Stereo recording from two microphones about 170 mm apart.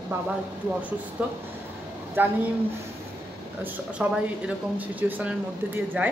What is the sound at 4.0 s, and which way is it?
Speech, 10° right (ahead or behind).